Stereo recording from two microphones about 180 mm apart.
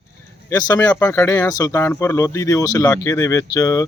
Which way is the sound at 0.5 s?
20° left (ahead or behind).